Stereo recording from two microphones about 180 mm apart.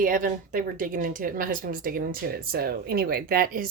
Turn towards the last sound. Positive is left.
turn(degrees=-50)  # may be behind; listen again after turning